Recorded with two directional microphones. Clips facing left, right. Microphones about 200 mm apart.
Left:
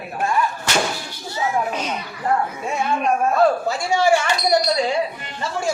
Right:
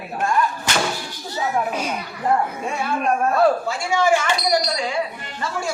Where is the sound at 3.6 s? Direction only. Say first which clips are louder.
Left 1 dB; 40° left (ahead or behind).